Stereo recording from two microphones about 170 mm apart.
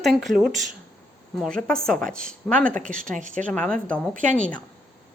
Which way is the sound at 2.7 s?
50° right (ahead or behind).